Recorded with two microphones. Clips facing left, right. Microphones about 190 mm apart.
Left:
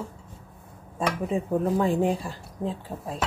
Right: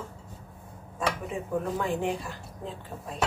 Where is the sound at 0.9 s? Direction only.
30° left (ahead or behind).